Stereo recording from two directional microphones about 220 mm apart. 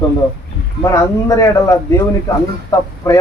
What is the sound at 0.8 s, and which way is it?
Speech, 15° left (ahead or behind).